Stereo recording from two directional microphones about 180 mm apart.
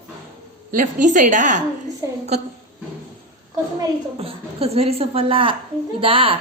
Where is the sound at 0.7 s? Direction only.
45° right (ahead or behind).